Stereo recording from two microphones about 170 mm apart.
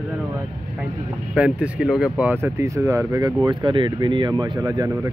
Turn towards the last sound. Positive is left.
turn(degrees=-20)  # may be behind; listen again after turning